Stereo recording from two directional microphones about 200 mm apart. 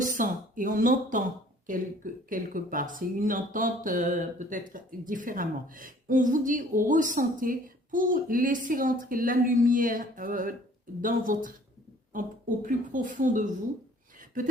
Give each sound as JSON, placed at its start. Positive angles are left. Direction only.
{"t": 0.0, "sound": "speech", "side_deg": -40}